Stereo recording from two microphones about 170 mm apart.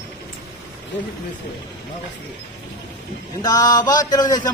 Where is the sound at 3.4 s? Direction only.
20° left (ahead or behind).